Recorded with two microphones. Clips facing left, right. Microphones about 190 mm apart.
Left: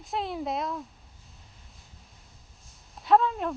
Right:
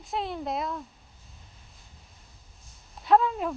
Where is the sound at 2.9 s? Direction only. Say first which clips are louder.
Even; centre (ahead or behind).